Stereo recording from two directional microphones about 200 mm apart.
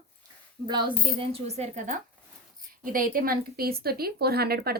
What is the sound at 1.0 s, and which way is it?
Speech, 25° right (ahead or behind).